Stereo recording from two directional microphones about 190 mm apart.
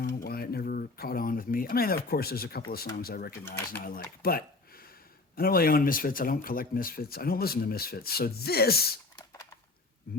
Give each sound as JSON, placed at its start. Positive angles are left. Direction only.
{"t": 0.0, "sound": "speech", "side_deg": 50}
{"t": 10.1, "sound": "speech", "side_deg": 50}